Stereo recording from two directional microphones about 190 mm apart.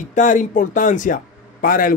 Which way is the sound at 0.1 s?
40° left (ahead or behind).